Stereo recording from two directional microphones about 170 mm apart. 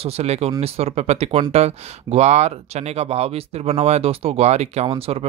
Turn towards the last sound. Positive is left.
turn(degrees=-35)  # may be behind; listen again after turning